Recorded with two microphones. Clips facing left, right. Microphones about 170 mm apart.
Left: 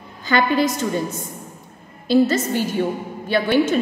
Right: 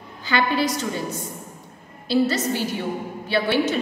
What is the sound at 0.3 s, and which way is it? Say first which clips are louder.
A woman's voice: left 4 dB; 45° left (ahead or behind).